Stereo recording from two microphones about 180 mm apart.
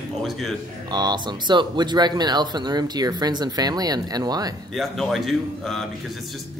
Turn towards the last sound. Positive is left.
turn(degrees=0)  # may be behind; listen again after turning